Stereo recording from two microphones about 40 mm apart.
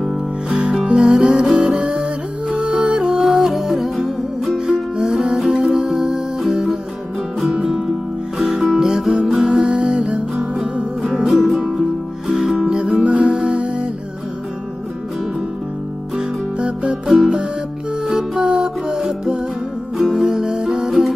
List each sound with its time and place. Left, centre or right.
0.0 s music: centre
0.8 s music: centre
1.5 s music: centre
3.0 s music: centre
4.6 s music: centre
8.4 s music: centre
8.7 s music: centre
10.3 s music: centre
12.6 s music: centre
13.3 s music: centre
18.0 s music: centre